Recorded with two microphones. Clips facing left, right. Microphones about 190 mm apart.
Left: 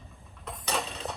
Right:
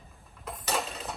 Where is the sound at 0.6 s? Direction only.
Centre (ahead or behind).